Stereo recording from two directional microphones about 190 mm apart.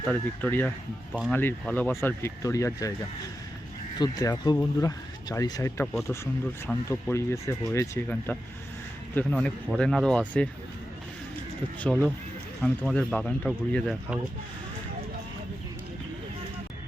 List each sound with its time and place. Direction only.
0.1 s speech: 10° left (ahead or behind)
3.9 s speech: 20° left (ahead or behind); by 10.5 s 5° left (ahead or behind)
12.6 s speech: 5° left (ahead or behind)